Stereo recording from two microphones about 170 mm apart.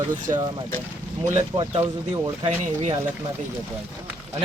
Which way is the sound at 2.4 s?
40° right (ahead or behind).